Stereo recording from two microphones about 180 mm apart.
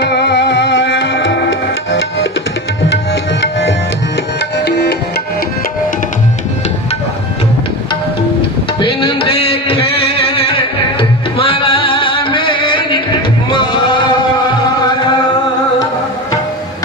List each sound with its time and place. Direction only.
0.0 s music: 70° left (ahead or behind); by 2.3 s 90° left
4.4 s tabla: 65° left (ahead or behind)
8.8 s a sound: 30° left (ahead or behind)
11.3 s music: 30° left (ahead or behind)